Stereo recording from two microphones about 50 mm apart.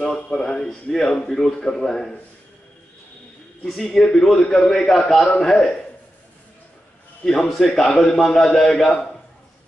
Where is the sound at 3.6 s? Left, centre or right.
Centre.